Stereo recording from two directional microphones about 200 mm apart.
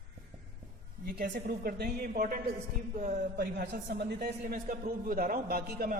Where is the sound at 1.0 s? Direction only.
45° right (ahead or behind).